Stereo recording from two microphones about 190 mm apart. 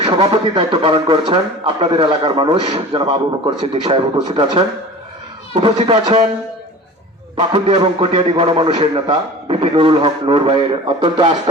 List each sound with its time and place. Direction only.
0.0 s speech: 25° right (ahead or behind)
7.3 s speech: 30° right (ahead or behind)